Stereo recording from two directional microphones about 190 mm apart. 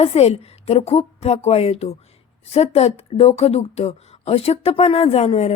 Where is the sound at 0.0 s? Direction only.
30° left (ahead or behind).